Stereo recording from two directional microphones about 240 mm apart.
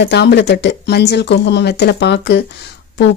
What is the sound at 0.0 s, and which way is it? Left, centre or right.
Speech, left.